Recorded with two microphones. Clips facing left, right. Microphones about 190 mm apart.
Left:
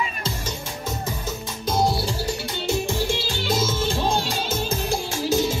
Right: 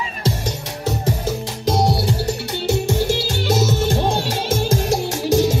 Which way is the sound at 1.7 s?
70° right (ahead or behind).